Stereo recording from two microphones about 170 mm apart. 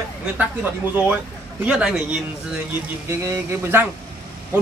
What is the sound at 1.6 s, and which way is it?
Speech, 5° right (ahead or behind).